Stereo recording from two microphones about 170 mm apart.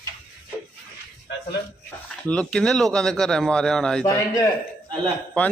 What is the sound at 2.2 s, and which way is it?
A man's voice, 5° left (ahead or behind).